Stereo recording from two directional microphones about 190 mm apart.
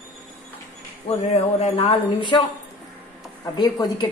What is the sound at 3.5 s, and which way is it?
Speech, 25° left (ahead or behind).